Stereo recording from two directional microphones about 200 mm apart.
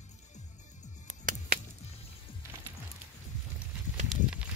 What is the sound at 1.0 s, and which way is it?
Music, 40° right (ahead or behind).